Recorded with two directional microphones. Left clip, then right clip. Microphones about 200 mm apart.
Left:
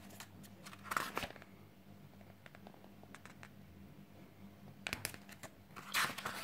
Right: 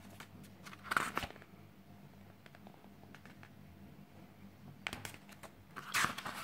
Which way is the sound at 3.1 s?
5° left (ahead or behind).